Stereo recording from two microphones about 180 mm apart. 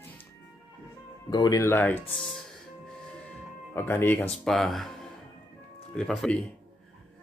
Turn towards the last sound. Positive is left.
turn(degrees=5)  # may be behind; listen again after turning